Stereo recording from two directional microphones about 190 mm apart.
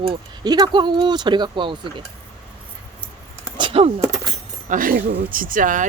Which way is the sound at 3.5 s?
30° right (ahead or behind).